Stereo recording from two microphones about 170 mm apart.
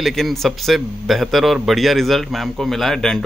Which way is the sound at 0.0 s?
Centre (ahead or behind).